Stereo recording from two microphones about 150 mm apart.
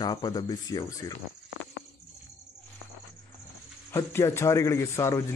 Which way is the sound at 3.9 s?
20° left (ahead or behind).